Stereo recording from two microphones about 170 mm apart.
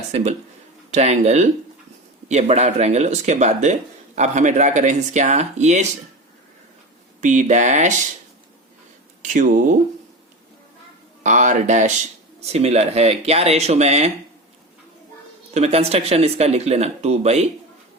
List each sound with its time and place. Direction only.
0.1 s speech: 40° right (ahead or behind)
7.2 s speech: 45° right (ahead or behind)
9.2 s speech: 50° right (ahead or behind)
11.2 s speech: 45° right (ahead or behind)
15.5 s speech: 40° right (ahead or behind)